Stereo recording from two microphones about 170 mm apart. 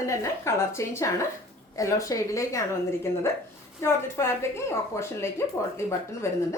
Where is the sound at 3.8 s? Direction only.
15° left (ahead or behind).